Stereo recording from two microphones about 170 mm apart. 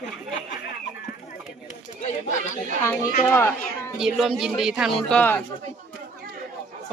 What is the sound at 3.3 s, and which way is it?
Speech, 15° left (ahead or behind).